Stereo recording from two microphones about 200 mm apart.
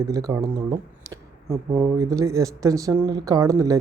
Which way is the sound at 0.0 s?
15° right (ahead or behind).